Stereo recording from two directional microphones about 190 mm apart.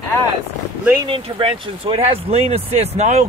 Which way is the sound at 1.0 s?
25° right (ahead or behind).